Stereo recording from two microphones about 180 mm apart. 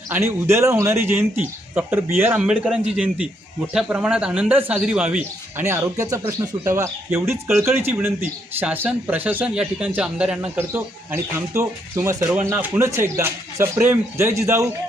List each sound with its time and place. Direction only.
0.1 s speech: 15° right (ahead or behind)